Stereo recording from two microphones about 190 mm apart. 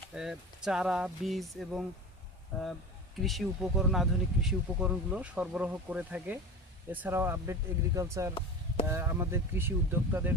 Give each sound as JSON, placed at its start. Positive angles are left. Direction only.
{"t": 0.1, "sound": "speech", "side_deg": -5}
{"t": 3.2, "sound": "speech", "side_deg": 0}
{"t": 8.4, "sound": "chop", "side_deg": 30}
{"t": 8.9, "sound": "speech", "side_deg": -15}